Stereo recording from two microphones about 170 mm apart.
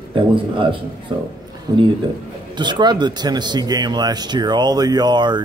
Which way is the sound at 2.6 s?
25° right (ahead or behind).